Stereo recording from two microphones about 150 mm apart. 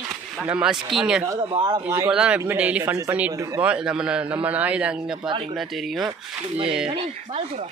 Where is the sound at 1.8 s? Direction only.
15° right (ahead or behind).